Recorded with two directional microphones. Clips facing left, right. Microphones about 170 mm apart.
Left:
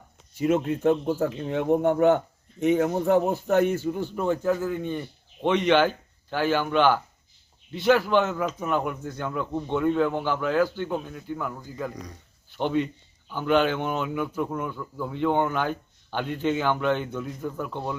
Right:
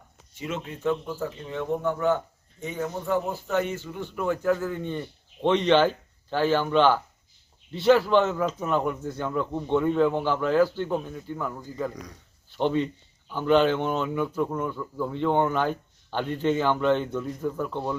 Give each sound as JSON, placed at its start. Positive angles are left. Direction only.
{"t": 0.4, "sound": "speech", "side_deg": 50}
{"t": 1.2, "sound": "speech", "side_deg": 60}
{"t": 3.2, "sound": "speech", "side_deg": 50}
{"t": 4.1, "sound": "speech", "side_deg": 30}
{"t": 4.4, "sound": "speech", "side_deg": 15}